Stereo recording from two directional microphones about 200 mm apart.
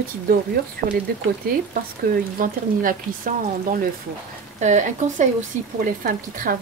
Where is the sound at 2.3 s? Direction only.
45° right (ahead or behind).